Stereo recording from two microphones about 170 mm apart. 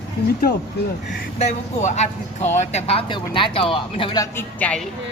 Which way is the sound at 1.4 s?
40° left (ahead or behind).